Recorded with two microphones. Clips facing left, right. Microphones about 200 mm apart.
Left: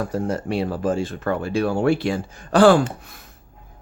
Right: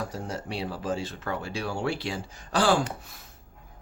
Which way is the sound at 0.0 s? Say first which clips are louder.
Left 9 dB; 55° left (ahead or behind).